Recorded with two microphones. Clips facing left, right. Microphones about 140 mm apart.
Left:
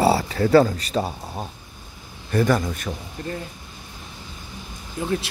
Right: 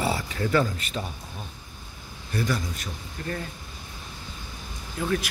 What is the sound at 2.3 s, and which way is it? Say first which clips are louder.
Speech: left 8 dB; 55° left (ahead or behind).